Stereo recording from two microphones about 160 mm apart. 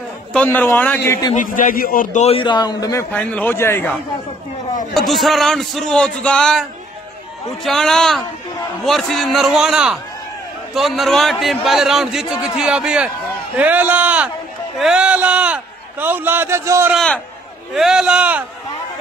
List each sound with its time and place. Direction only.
0.3 s a man's voice: 10° left (ahead or behind)
1.3 s a man's voice: 55° left (ahead or behind)
2.2 s a man's voice: 30° left (ahead or behind); by 3.9 s 15° left (ahead or behind)
4.9 s a man's voice: centre (ahead or behind)
7.6 s a man's voice: centre (ahead or behind); by 16.9 s 15° right (ahead or behind)
16.9 s a man's voice: 5° left (ahead or behind)